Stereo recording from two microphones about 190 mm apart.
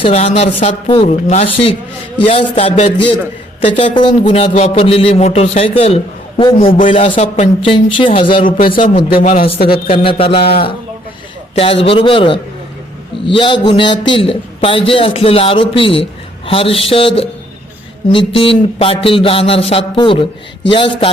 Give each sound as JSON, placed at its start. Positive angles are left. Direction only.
{"t": 0.0, "sound": "a man's voice", "side_deg": 35}
{"t": 8.4, "sound": "speech", "side_deg": 45}
{"t": 8.6, "sound": "a man's voice", "side_deg": 25}
{"t": 11.5, "sound": "a man's voice", "side_deg": 30}
{"t": 18.3, "sound": "a man's voice", "side_deg": 30}